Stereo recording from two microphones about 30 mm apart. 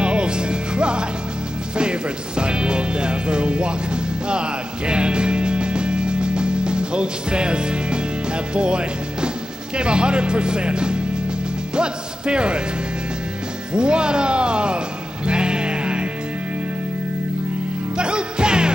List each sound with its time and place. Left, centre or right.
0.0 s music: right
9.8 s speech: right
13.7 s speech: right
15.2 s music: right
17.9 s music: right